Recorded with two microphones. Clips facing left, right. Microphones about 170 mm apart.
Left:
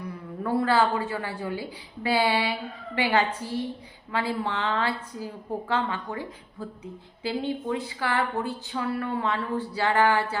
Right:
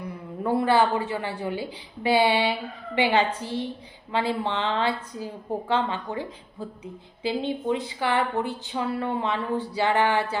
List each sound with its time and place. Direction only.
0.4 s speech: 20° right (ahead or behind)